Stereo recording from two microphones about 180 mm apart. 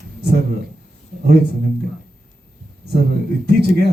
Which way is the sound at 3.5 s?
65° right (ahead or behind).